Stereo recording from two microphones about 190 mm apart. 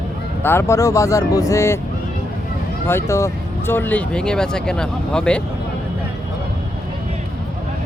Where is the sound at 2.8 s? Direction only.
15° left (ahead or behind).